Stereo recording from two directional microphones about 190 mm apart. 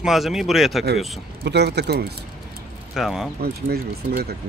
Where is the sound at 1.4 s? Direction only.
60° right (ahead or behind).